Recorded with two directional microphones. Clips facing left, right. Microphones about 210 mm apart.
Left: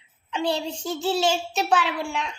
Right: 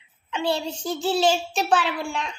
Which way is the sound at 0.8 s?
15° right (ahead or behind).